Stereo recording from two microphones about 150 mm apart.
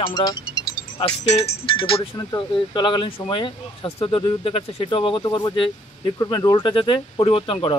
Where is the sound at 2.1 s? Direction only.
30° left (ahead or behind).